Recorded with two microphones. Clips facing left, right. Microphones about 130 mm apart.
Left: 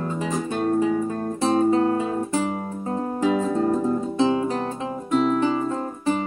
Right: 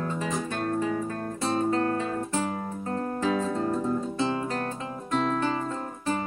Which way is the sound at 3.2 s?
15° left (ahead or behind).